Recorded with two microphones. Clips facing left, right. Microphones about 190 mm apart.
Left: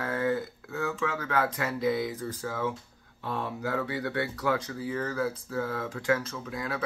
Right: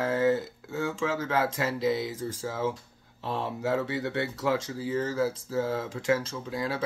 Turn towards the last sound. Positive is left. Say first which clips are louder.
# right 3 dB
turn(degrees=-30)  # may be behind; listen again after turning